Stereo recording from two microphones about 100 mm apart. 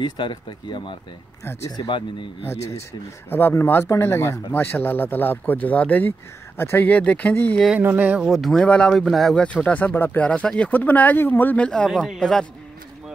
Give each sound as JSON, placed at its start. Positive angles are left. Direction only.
{"t": 0.0, "sound": "speech", "side_deg": 50}
{"t": 1.4, "sound": "speech", "side_deg": 25}
{"t": 1.8, "sound": "speech", "side_deg": 55}
{"t": 2.5, "sound": "speech", "side_deg": 90}
{"t": 3.3, "sound": "speech", "side_deg": 20}
{"t": 7.8, "sound": "speech", "side_deg": -15}
{"t": 8.2, "sound": "speech", "side_deg": 0}